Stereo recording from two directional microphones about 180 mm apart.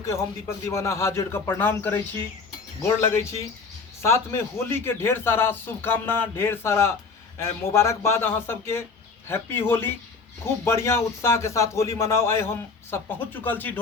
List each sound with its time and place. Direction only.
0.0 s a man's voice: 15° left (ahead or behind)